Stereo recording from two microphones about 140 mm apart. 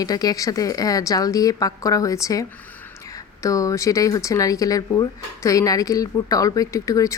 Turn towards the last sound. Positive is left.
turn(degrees=25)  # may be behind; listen again after turning